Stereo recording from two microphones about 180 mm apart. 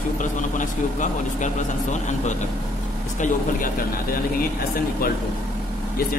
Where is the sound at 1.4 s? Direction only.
40° left (ahead or behind).